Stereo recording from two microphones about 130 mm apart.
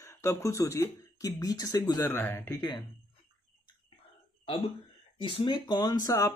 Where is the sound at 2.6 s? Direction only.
30° left (ahead or behind).